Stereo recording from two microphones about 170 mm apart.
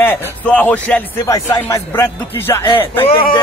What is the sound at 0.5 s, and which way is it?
A man's voice, 10° left (ahead or behind).